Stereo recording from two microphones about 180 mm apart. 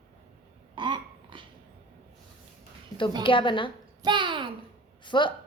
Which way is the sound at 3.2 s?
25° left (ahead or behind).